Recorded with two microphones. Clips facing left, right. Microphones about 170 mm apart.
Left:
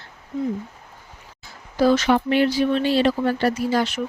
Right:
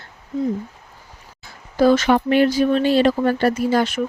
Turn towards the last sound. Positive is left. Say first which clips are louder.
# right 3 dB
turn(degrees=-50)  # may be behind; listen again after turning